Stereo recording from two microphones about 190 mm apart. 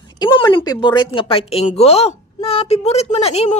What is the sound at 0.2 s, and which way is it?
A woman's voice, 25° left (ahead or behind).